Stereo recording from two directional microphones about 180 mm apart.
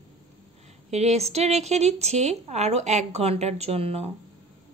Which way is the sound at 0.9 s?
40° right (ahead or behind).